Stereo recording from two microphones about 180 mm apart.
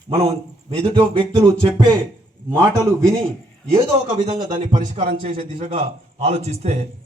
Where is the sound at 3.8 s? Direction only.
25° right (ahead or behind).